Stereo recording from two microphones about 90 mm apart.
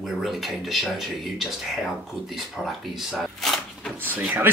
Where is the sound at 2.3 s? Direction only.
Centre (ahead or behind).